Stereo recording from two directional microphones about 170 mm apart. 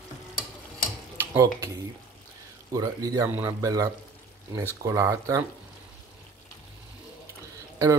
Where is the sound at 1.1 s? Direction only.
15° right (ahead or behind).